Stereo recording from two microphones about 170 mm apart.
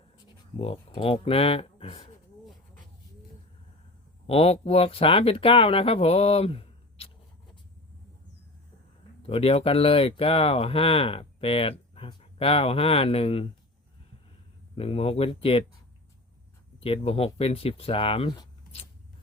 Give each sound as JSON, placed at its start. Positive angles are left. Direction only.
{"t": 0.5, "sound": "speech", "side_deg": 35}
{"t": 4.3, "sound": "speech", "side_deg": 35}
{"t": 9.2, "sound": "speech", "side_deg": 35}
{"t": 14.8, "sound": "speech", "side_deg": 35}
{"t": 16.8, "sound": "speech", "side_deg": 35}